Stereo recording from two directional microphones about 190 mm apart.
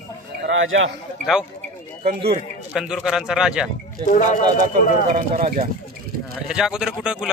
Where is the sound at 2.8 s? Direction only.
5° right (ahead or behind).